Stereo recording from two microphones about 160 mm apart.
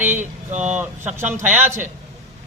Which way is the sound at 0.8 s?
15° right (ahead or behind).